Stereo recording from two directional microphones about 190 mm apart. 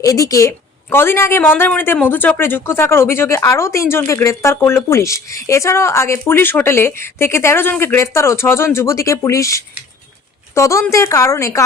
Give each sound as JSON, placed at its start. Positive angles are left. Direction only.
{"t": 0.0, "sound": "speech", "side_deg": 15}